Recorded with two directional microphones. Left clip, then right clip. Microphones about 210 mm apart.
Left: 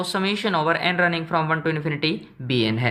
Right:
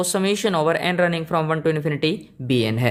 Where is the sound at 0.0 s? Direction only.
45° right (ahead or behind).